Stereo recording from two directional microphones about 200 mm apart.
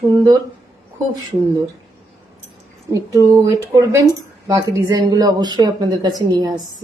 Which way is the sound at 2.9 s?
15° right (ahead or behind).